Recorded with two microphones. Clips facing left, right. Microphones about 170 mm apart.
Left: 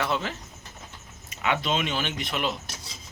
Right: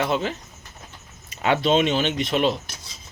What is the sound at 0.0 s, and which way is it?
Speech, 20° right (ahead or behind).